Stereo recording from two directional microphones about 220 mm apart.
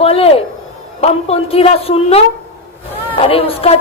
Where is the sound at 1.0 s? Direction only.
25° left (ahead or behind).